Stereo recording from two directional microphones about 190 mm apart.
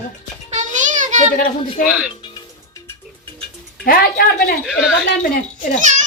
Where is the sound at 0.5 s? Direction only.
40° right (ahead or behind).